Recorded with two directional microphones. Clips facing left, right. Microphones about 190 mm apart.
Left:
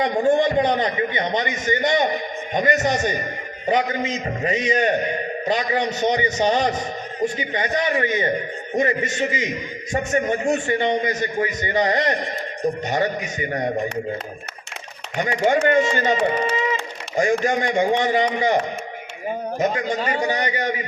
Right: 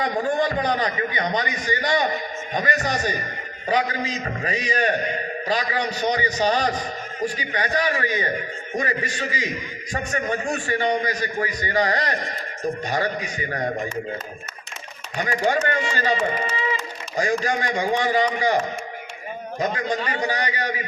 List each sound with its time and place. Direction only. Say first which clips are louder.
0.0 s a man's voice: left 4 dB; 25° left (ahead or behind)
15.2 s a man's voice: left 4 dB; 25° left (ahead or behind)
17.4 s a man's voice: left 4 dB; 25° left (ahead or behind)
19.5 s a man's voice: left 1 dB; 25° left (ahead or behind)